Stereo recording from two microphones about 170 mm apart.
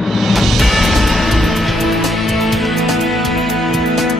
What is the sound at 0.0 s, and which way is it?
Music, centre (ahead or behind).